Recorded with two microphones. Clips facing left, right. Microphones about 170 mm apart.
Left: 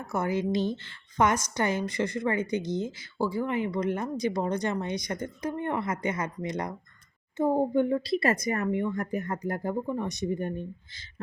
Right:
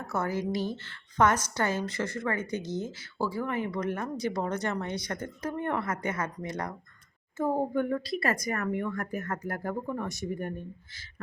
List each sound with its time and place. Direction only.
0.1 s a woman's voice: 15° left (ahead or behind)